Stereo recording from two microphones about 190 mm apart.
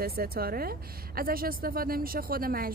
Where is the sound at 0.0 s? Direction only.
55° right (ahead or behind).